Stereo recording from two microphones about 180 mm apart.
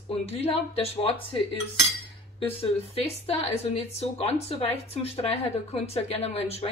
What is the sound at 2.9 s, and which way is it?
Speech, 35° left (ahead or behind).